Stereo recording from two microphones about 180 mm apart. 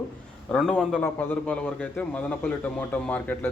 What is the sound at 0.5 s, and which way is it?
A man's voice, centre (ahead or behind).